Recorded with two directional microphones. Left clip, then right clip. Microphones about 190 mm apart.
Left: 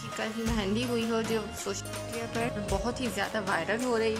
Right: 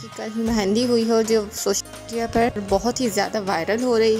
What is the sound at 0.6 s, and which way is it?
A woman's voice, 25° right (ahead or behind).